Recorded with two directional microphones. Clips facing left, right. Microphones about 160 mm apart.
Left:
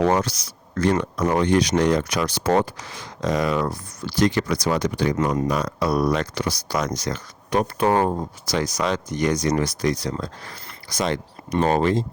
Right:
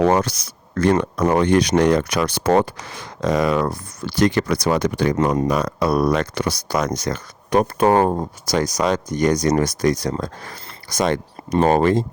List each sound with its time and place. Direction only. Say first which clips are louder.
0.0 s speech: right 3 dB; 55° right (ahead or behind)